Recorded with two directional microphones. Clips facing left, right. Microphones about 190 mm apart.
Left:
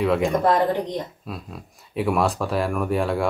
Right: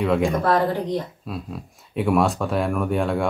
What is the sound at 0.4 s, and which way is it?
Speech, 20° left (ahead or behind).